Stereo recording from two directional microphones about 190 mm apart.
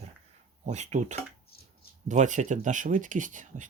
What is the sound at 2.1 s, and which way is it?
Speech, 40° right (ahead or behind).